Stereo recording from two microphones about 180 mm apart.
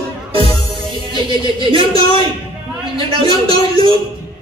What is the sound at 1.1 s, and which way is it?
Speech, 25° right (ahead or behind).